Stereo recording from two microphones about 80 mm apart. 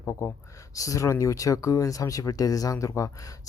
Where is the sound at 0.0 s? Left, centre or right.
Left.